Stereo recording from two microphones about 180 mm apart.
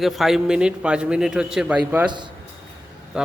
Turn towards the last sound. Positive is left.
turn(degrees=-5)  # may be behind; listen again after turning